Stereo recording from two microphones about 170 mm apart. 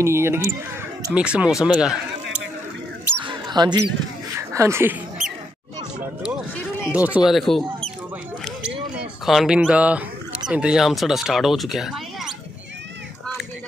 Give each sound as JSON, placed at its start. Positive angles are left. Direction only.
{"t": 0.0, "sound": "speech", "side_deg": -15}
{"t": 3.3, "sound": "a sound", "side_deg": -25}
{"t": 4.4, "sound": "speech", "side_deg": -15}
{"t": 6.9, "sound": "speech", "side_deg": -10}
{"t": 9.2, "sound": "speech", "side_deg": 0}